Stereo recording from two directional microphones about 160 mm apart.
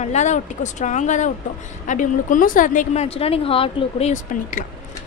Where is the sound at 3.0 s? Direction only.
40° left (ahead or behind).